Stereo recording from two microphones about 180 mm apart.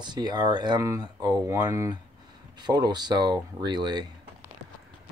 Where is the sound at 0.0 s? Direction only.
25° right (ahead or behind).